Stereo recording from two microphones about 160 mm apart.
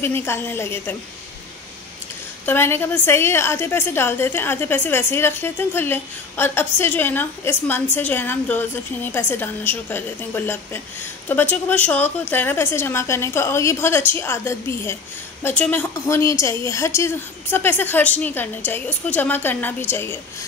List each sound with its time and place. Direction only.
0.0 s a woman's voice: 15° left (ahead or behind)
2.4 s a woman's voice: 15° left (ahead or behind)